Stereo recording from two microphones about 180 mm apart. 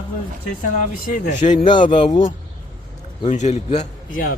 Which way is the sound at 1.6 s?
25° left (ahead or behind).